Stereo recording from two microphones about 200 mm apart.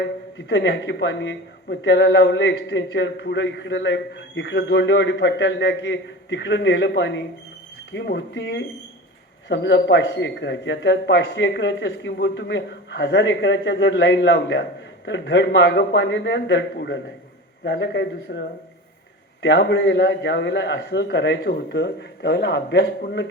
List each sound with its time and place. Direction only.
0.0 s a man's voice: 60° left (ahead or behind)